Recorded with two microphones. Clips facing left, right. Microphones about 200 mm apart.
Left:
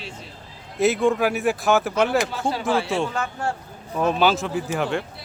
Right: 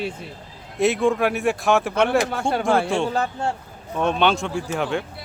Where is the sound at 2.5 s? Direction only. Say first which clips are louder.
Right 4 dB; 50° right (ahead or behind).